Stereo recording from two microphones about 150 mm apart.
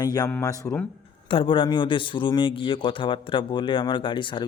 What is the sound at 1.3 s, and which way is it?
A man's voice, 35° left (ahead or behind).